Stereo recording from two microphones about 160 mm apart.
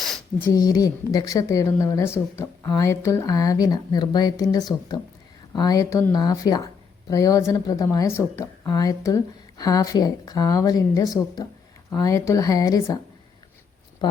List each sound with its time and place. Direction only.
0.5 s a woman's voice: 25° left (ahead or behind)
14.0 s speech: 30° left (ahead or behind)